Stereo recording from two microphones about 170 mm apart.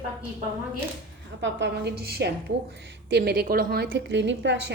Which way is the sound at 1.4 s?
90° right.